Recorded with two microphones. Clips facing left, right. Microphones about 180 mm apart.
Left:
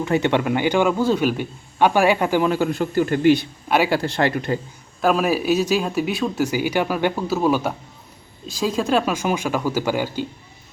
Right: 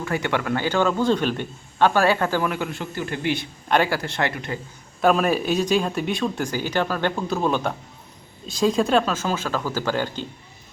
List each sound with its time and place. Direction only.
0.0 s a man's voice: 25° left (ahead or behind)
2.5 s speech: 35° left (ahead or behind)
4.9 s a man's voice: 5° left (ahead or behind)